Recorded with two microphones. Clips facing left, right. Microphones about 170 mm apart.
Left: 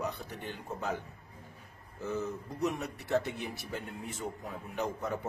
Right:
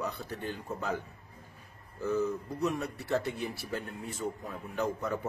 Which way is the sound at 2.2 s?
20° left (ahead or behind).